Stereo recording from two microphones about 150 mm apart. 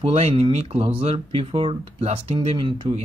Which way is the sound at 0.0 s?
40° right (ahead or behind).